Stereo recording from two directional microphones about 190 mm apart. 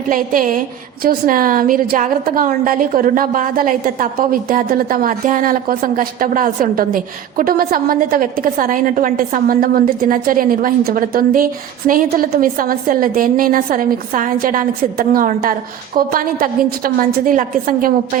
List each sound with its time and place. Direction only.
0.1 s a woman's voice: 45° right (ahead or behind)